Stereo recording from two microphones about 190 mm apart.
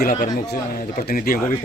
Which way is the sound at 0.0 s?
45° left (ahead or behind).